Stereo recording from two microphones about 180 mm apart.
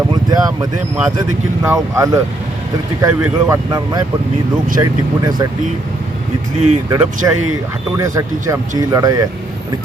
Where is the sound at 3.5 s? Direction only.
20° right (ahead or behind).